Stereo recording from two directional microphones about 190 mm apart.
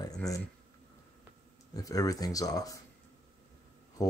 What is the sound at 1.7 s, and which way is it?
Speech, 20° left (ahead or behind).